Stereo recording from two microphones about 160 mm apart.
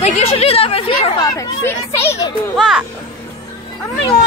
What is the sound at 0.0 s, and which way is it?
Speech, 40° left (ahead or behind).